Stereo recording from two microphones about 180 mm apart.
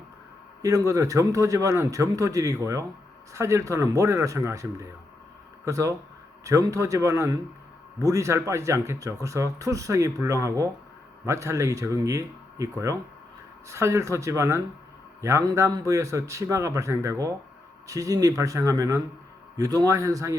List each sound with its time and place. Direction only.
0.6 s speech: 20° right (ahead or behind)